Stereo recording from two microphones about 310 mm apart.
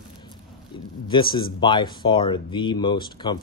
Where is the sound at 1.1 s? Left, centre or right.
Centre.